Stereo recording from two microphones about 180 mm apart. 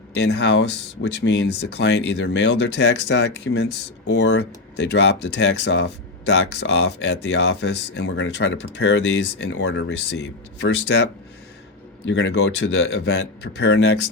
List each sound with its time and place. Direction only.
0.1 s speech: 70° left (ahead or behind)
12.0 s speech: 85° left